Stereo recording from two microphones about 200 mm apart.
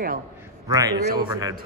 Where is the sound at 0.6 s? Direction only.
15° right (ahead or behind).